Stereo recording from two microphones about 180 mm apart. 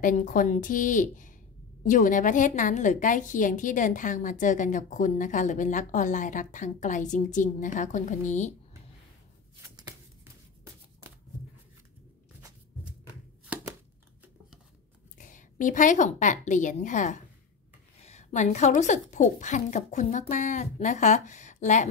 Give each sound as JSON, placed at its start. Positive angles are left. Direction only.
{"t": 0.0, "sound": "a woman's voice", "side_deg": 45}
{"t": 9.6, "sound": "a sound", "side_deg": -15}
{"t": 15.1, "sound": "a woman's voice", "side_deg": 45}